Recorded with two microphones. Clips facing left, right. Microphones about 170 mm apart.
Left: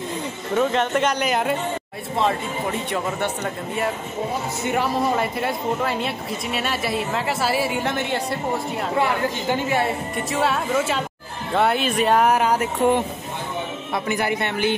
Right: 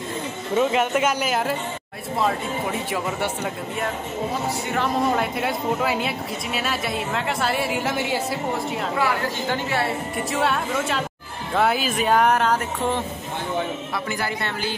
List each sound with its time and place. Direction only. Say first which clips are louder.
0.6 s a woman's voice: even; 5° right (ahead or behind)
4.8 s a woman's voice: right 3 dB; centre (ahead or behind)
9.0 s a woman's voice: left 2 dB; 15° left (ahead or behind)
10.1 s a woman's voice: even; centre (ahead or behind); by 14.8 s 20° left (ahead or behind)